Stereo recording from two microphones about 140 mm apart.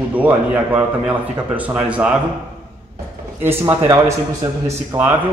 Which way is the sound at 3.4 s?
15° right (ahead or behind).